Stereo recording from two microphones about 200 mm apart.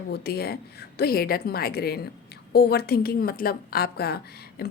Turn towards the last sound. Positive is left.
turn(degrees=50)  # may be behind; listen again after turning